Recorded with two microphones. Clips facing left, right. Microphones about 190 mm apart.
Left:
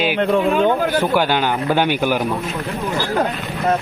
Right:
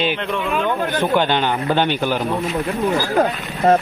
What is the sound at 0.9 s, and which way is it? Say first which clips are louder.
A man's voice: left 1 dB; 10° left (ahead or behind).